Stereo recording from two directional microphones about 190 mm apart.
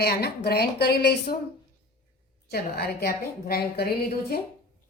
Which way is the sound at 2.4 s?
55° left (ahead or behind).